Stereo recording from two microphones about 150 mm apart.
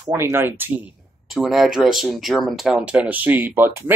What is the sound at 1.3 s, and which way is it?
Speech, centre (ahead or behind).